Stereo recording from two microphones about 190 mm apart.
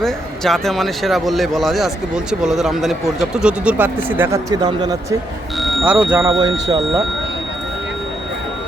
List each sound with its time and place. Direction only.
0.0 s speech: centre (ahead or behind); by 4.9 s 20° right (ahead or behind)
5.5 s vehicle: centre (ahead or behind)
6.2 s speech: 25° right (ahead or behind)